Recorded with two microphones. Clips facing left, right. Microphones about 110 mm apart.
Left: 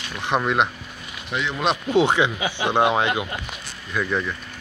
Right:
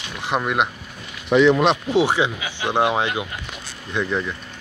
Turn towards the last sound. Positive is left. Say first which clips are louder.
# right 1 dB
turn(degrees=-15)  # may be behind; listen again after turning